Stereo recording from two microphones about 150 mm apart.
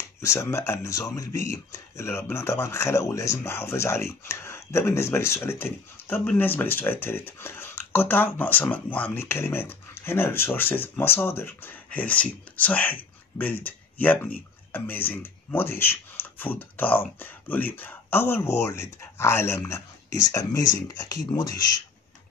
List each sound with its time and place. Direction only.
0.2 s speech: 20° left (ahead or behind)